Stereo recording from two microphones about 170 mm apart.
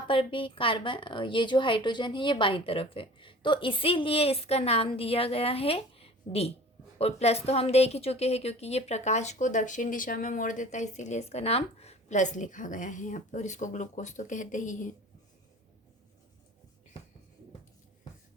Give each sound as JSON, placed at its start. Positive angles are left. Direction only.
{"t": 0.1, "sound": "a woman's voice", "side_deg": 30}